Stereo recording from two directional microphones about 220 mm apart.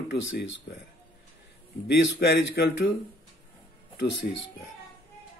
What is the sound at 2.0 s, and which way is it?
Speech, 55° left (ahead or behind).